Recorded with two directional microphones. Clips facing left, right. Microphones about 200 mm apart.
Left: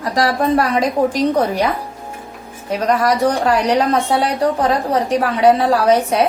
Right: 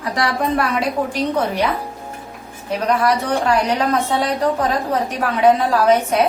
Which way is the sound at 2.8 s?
40° left (ahead or behind).